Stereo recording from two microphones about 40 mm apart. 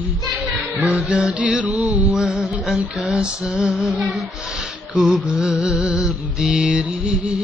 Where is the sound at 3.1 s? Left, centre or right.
Right.